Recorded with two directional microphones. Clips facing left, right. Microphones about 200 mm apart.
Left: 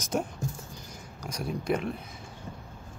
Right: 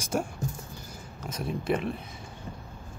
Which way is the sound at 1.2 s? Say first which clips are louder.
Right 1 dB; centre (ahead or behind).